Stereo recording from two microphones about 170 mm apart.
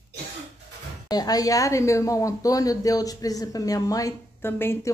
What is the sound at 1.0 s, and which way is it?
Speech, 25° left (ahead or behind).